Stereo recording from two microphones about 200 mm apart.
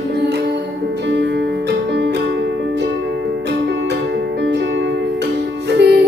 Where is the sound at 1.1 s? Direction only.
60° right (ahead or behind).